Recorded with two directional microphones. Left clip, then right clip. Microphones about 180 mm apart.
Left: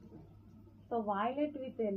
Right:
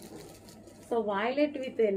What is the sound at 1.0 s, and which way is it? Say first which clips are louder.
Speech: right 5 dB; 30° right (ahead or behind).